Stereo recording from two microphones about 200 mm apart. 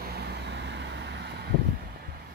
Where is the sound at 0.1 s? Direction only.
55° right (ahead or behind).